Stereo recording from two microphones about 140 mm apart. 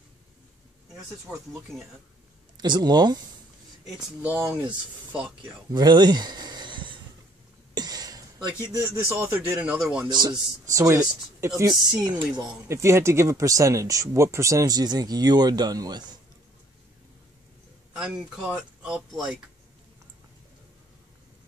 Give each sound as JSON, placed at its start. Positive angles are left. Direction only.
{"t": 1.7, "sound": "a man's voice", "side_deg": 0}
{"t": 2.5, "sound": "speech", "side_deg": -30}
{"t": 4.2, "sound": "speech", "side_deg": -10}
{"t": 5.7, "sound": "speech", "side_deg": -30}
{"t": 7.7, "sound": "a sound", "side_deg": -30}
{"t": 9.2, "sound": "speech", "side_deg": -10}
{"t": 10.0, "sound": "speech", "side_deg": -30}
{"t": 12.6, "sound": "speech", "side_deg": -20}
{"t": 17.9, "sound": "a man's voice", "side_deg": -5}